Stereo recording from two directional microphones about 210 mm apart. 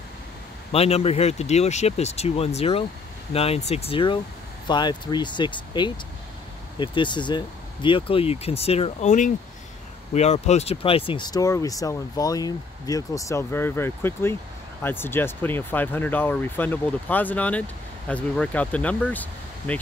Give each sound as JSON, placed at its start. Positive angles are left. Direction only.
{"t": 0.7, "sound": "speech", "side_deg": 30}